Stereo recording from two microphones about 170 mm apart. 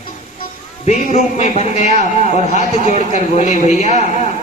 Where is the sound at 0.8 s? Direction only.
40° left (ahead or behind).